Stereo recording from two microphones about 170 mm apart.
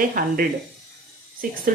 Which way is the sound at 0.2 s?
55° right (ahead or behind).